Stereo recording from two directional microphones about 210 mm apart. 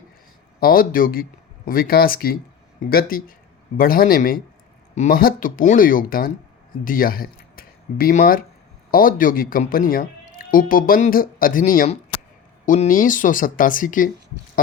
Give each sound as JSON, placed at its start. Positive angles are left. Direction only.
{"t": 0.6, "sound": "speech", "side_deg": 45}